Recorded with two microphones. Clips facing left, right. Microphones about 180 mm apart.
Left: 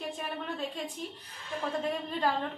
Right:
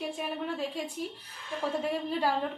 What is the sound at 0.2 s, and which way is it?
Speech, 10° right (ahead or behind).